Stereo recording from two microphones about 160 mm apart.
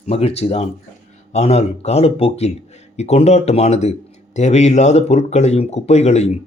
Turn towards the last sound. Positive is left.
turn(degrees=45)  # may be behind; listen again after turning